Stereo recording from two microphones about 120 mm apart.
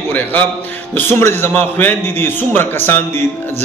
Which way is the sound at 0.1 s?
15° left (ahead or behind).